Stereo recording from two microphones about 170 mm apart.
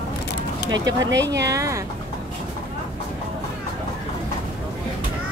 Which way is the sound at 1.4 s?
20° right (ahead or behind).